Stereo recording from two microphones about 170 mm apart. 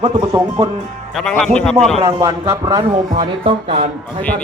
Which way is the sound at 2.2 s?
25° right (ahead or behind).